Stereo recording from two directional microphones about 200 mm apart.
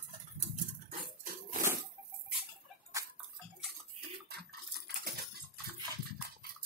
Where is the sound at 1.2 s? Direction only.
40° right (ahead or behind).